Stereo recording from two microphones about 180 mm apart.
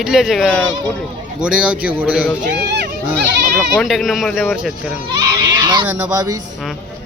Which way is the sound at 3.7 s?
Centre (ahead or behind).